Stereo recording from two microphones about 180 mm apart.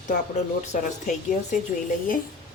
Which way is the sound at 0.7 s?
45° left (ahead or behind).